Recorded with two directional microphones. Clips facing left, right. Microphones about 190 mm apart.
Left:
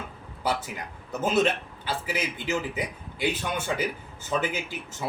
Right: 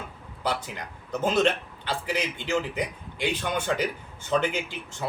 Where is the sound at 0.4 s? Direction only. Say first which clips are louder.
Left 1 dB; 5° left (ahead or behind).